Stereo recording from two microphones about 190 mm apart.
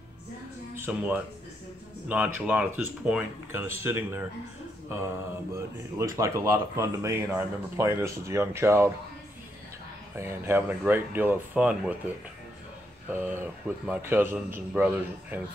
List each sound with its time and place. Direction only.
0.7 s speech: 10° right (ahead or behind)
5.5 s speech: 15° right (ahead or behind)
10.1 s speech: 10° right (ahead or behind)
13.1 s speech: 10° right (ahead or behind)